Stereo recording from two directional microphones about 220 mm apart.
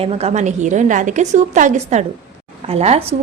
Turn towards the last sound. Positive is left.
turn(degrees=-30)  # may be behind; listen again after turning